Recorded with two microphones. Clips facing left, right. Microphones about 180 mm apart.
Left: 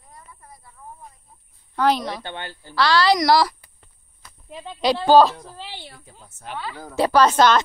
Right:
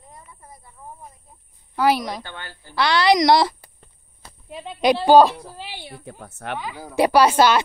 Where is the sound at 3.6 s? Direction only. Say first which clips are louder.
Right 5 dB; 35° right (ahead or behind).